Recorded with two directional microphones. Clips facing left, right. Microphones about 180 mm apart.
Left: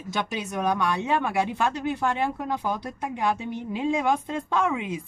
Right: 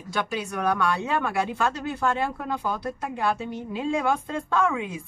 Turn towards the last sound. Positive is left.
turn(degrees=20)  # may be behind; listen again after turning